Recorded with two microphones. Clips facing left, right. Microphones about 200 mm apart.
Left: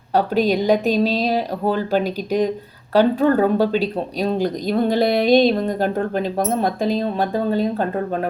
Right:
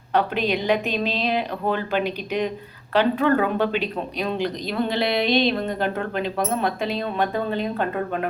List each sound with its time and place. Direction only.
0.1 s speech: 40° left (ahead or behind)